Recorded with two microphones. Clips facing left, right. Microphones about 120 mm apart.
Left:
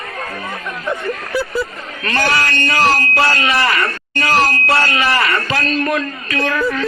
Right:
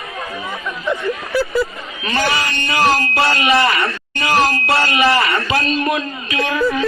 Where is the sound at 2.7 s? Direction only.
20° right (ahead or behind).